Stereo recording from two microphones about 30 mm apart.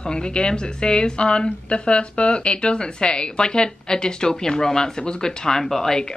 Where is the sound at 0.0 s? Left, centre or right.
Left.